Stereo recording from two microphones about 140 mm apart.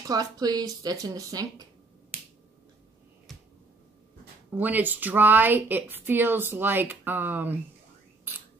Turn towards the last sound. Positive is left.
turn(degrees=-15)  # may be behind; listen again after turning